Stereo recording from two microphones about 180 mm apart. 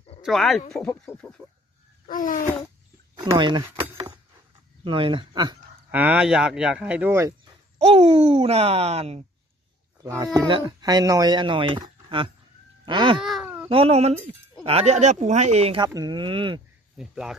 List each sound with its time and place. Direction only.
0.2 s speech: centre (ahead or behind)
2.0 s a sound: 45° left (ahead or behind)
3.3 s speech: 25° right (ahead or behind)
3.8 s a sound: 15° right (ahead or behind)
4.8 s speech: 30° right (ahead or behind)
5.9 s speech: 10° right (ahead or behind)
7.8 s speech: 35° right (ahead or behind)
10.0 s speech: 20° right (ahead or behind)
13.2 s a sound: 5° right (ahead or behind)
13.7 s speech: 30° right (ahead or behind)
16.9 s speech: 5° right (ahead or behind)